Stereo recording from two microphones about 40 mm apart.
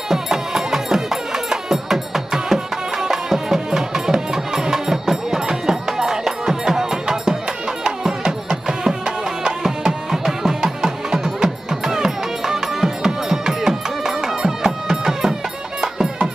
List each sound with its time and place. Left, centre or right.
0.1 s music: centre